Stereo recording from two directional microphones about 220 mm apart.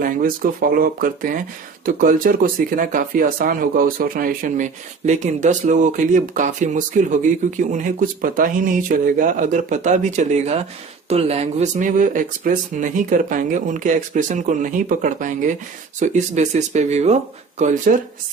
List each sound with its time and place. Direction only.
0.0 s speech: 40° right (ahead or behind)